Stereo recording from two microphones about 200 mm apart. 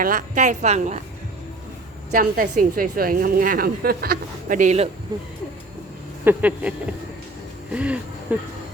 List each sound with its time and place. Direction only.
0.0 s a woman's voice: 40° right (ahead or behind)
2.0 s a woman's voice: 45° right (ahead or behind)
6.2 s a sound: 5° right (ahead or behind)
7.7 s speech: 5° right (ahead or behind)